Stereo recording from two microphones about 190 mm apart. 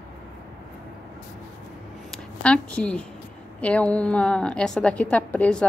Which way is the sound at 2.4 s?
5° left (ahead or behind).